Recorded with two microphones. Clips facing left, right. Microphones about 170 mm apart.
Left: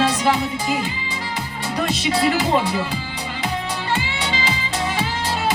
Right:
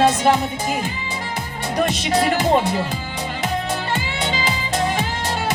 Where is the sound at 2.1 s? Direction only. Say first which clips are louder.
Right 2 dB; 50° right (ahead or behind).